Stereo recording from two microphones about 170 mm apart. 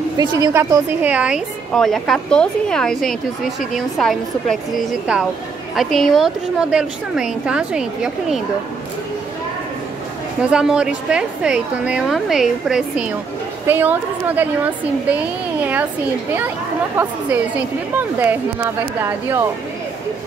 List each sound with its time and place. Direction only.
0.2 s a woman's voice: 25° right (ahead or behind); by 4.6 s centre (ahead or behind)
5.8 s a woman's voice: centre (ahead or behind)
10.5 s a woman's voice: 5° right (ahead or behind)
16.3 s a woman's voice: 10° right (ahead or behind)